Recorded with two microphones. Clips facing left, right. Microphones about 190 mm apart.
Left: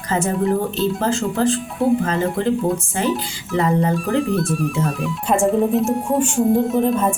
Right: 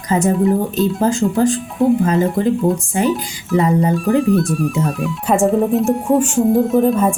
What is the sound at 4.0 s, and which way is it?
Speech, centre (ahead or behind).